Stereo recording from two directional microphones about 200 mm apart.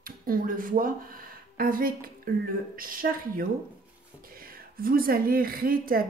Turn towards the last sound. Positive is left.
turn(degrees=-45)  # may be behind; listen again after turning